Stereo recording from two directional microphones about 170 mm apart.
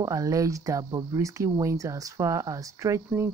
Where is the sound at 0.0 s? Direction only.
20° right (ahead or behind).